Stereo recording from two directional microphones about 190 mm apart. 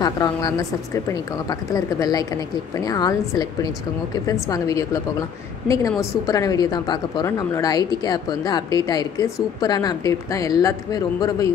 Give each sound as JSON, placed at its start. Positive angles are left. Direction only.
{"t": 0.0, "sound": "a woman's voice", "side_deg": 20}